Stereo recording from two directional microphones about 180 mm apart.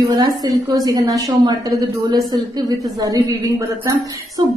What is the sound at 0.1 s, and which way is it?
A woman's voice, 20° right (ahead or behind).